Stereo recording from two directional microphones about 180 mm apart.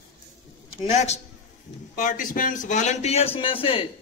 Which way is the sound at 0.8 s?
40° left (ahead or behind).